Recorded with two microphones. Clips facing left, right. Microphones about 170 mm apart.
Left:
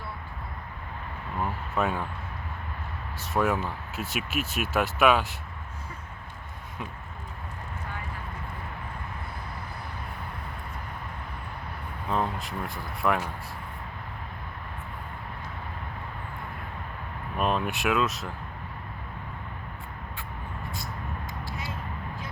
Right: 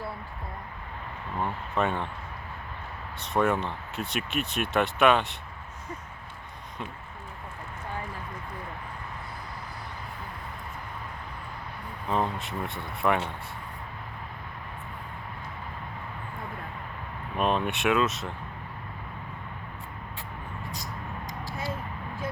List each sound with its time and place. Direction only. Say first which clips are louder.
1.7 s speech: even; 5° left (ahead or behind)
3.3 s speech: right 1 dB; 5° left (ahead or behind)
12.1 s speech: right 1 dB; centre (ahead or behind)
17.3 s speech: right 1 dB; centre (ahead or behind)
21.5 s a sound: right 6 dB; 30° right (ahead or behind)